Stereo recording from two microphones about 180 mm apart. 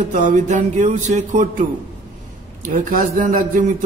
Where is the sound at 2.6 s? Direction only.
50° right (ahead or behind).